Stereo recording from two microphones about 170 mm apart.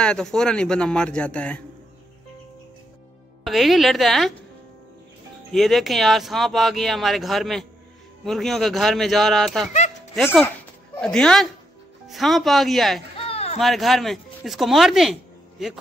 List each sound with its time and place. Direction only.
0.0 s speech: 5° left (ahead or behind)
3.4 s speech: centre (ahead or behind)
5.5 s speech: centre (ahead or behind)
13.1 s a sound: 35° left (ahead or behind)
13.6 s speech: centre (ahead or behind)